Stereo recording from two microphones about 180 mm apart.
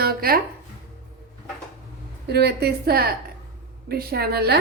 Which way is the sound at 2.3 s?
65° right (ahead or behind).